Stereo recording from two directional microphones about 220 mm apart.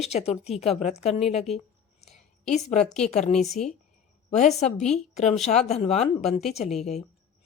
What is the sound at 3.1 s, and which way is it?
Speech, 30° left (ahead or behind).